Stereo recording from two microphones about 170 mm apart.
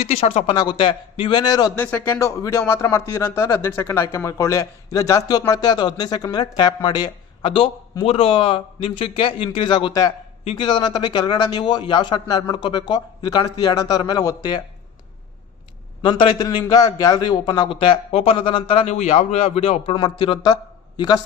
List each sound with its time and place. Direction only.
0.0 s speech: 35° left (ahead or behind)
0.5 s a man's voice: 25° left (ahead or behind)
1.7 s a man's voice: 10° left (ahead or behind)
16.0 s a man's voice: 25° left (ahead or behind)